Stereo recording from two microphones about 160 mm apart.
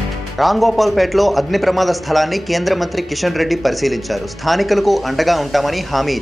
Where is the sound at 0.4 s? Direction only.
Centre (ahead or behind).